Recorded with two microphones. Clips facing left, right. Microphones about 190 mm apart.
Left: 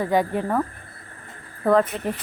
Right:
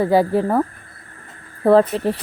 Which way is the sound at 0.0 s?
35° right (ahead or behind).